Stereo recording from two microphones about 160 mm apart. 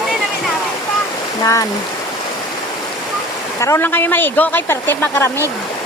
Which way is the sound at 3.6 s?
15° left (ahead or behind).